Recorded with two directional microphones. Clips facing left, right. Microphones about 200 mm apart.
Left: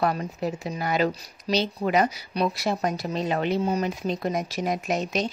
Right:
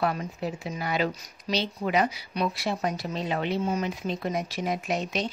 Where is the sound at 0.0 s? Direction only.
40° left (ahead or behind).